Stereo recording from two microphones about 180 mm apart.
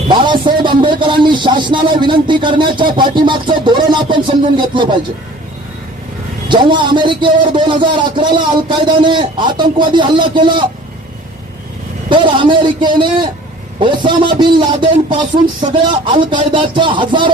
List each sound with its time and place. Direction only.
0.1 s a sound: 25° right (ahead or behind)
6.5 s a man's voice: 25° right (ahead or behind)
12.0 s a man's voice: 25° right (ahead or behind)